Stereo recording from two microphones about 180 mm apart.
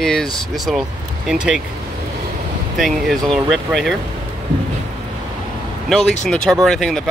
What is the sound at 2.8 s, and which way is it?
Speech, centre (ahead or behind).